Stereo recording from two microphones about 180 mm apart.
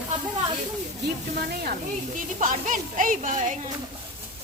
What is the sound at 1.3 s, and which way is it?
Speech, 55° right (ahead or behind).